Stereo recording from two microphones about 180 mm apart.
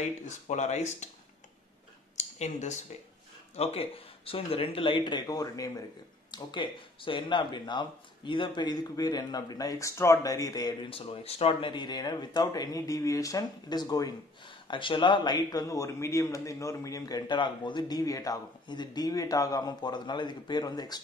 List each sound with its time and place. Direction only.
0.0 s speech: 40° left (ahead or behind)
2.1 s speech: 40° left (ahead or behind); by 21.0 s 20° left (ahead or behind)